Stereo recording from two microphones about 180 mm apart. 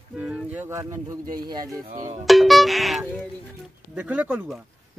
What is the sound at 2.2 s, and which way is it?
Speech, centre (ahead or behind).